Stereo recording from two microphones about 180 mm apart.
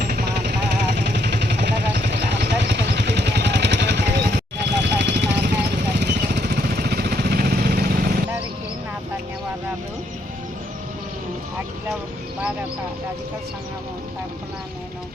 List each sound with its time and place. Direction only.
0.0 s vehicle: 60° right (ahead or behind)